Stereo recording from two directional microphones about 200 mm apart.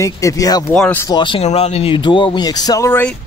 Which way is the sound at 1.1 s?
25° left (ahead or behind).